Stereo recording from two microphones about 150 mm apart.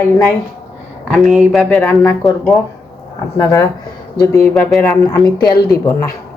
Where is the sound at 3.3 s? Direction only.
25° left (ahead or behind).